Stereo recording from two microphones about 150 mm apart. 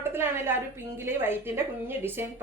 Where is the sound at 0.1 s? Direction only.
15° right (ahead or behind).